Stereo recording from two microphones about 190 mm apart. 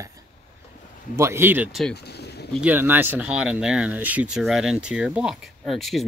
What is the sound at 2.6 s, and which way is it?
Speech, 10° right (ahead or behind).